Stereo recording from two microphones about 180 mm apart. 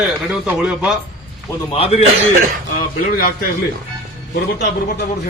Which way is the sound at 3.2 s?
55° left (ahead or behind).